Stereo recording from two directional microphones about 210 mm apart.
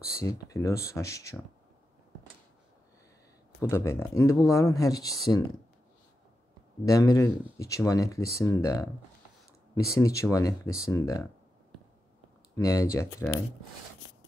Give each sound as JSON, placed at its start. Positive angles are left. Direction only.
{"t": 0.2, "sound": "speech", "side_deg": 15}
{"t": 3.6, "sound": "speech", "side_deg": 15}
{"t": 6.9, "sound": "speech", "side_deg": 15}
{"t": 12.5, "sound": "speech", "side_deg": 15}